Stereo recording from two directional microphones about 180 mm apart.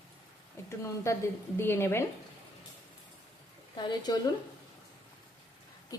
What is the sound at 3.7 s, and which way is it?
Speech, 25° left (ahead or behind).